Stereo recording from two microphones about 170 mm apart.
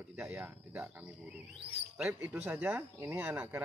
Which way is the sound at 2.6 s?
15° right (ahead or behind).